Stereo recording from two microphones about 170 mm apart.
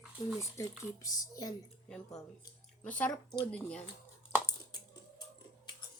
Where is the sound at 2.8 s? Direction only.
10° left (ahead or behind).